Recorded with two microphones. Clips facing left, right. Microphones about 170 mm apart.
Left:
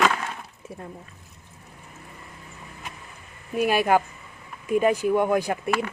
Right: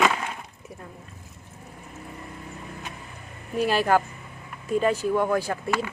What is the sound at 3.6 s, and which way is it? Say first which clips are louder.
Speech: left 1 dB; 10° left (ahead or behind).